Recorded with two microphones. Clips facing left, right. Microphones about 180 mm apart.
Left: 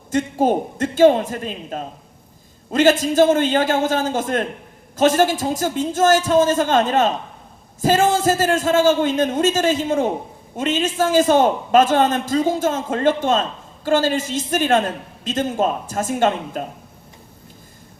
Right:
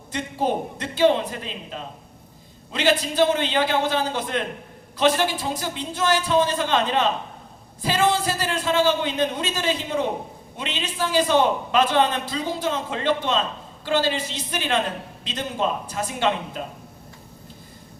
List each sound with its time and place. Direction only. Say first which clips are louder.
0.1 s a man's voice: left 7 dB; 45° left (ahead or behind)